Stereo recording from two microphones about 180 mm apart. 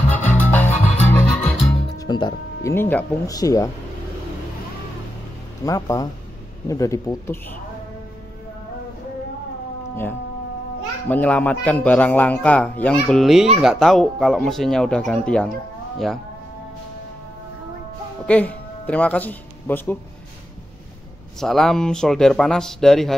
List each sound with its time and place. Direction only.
0.1 s music: 10° left (ahead or behind)
2.0 s music: 25° left (ahead or behind)
3.3 s speech: 20° left (ahead or behind)
5.7 s a man's voice: 20° left (ahead or behind)
11.1 s a man's voice: 10° left (ahead or behind)
18.2 s speech: 10° left (ahead or behind)
21.4 s speech: centre (ahead or behind)